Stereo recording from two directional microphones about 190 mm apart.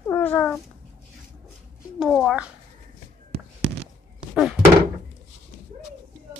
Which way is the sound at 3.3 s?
60° right (ahead or behind).